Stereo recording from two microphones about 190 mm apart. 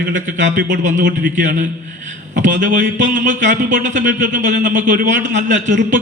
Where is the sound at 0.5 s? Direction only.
45° right (ahead or behind).